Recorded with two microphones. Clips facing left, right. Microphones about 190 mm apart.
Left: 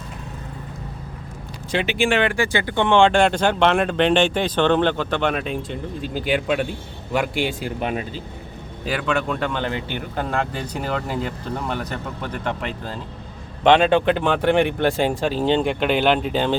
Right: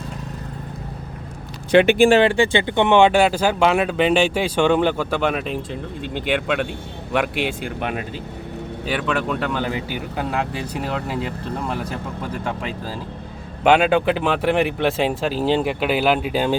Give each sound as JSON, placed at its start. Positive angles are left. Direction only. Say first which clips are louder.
{"t": 1.7, "sound": "speech", "louder": "right 10 dB", "side_deg": -60}
{"t": 2.0, "sound": "a man's voice", "louder": "right 6 dB", "side_deg": -35}
{"t": 8.9, "sound": "a man's voice", "louder": "even", "side_deg": 0}